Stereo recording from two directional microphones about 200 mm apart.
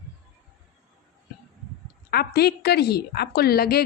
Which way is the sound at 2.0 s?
50° left (ahead or behind).